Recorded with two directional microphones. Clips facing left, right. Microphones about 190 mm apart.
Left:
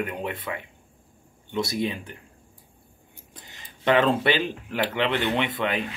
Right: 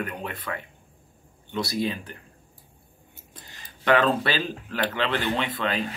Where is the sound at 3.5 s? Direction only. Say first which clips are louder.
Right 1 dB; 20° left (ahead or behind).